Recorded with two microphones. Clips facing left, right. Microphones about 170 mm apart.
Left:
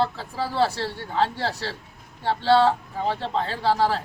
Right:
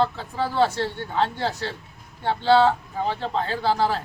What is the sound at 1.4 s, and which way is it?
A man's voice, centre (ahead or behind).